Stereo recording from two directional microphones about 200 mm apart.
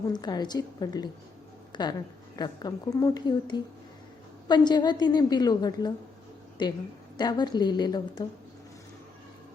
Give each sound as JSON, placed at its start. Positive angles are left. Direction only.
{"t": 0.1, "sound": "a woman's voice", "side_deg": 20}